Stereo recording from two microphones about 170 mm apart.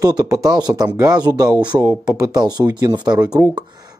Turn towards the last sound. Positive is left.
turn(degrees=-25)  # may be behind; listen again after turning